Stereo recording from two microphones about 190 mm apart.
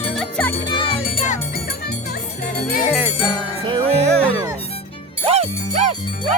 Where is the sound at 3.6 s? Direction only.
25° right (ahead or behind).